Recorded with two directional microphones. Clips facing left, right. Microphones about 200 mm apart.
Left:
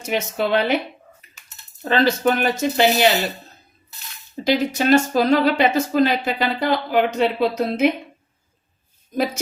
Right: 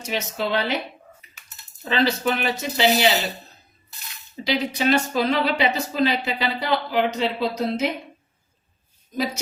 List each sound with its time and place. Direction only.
0.0 s speech: 55° left (ahead or behind)
1.8 s speech: 50° left (ahead or behind)
4.4 s speech: 45° left (ahead or behind)
9.1 s speech: 50° left (ahead or behind)